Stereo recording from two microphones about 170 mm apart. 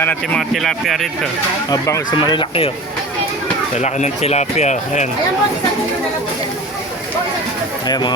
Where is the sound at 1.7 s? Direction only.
20° left (ahead or behind).